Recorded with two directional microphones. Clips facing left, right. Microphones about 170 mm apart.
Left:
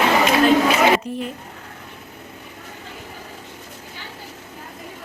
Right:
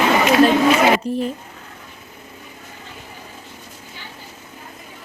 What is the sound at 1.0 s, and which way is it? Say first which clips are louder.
Speech: right 5 dB; 35° right (ahead or behind).